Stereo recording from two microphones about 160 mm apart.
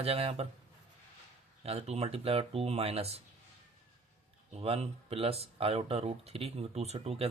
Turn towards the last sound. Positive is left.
turn(degrees=-40)  # may be behind; listen again after turning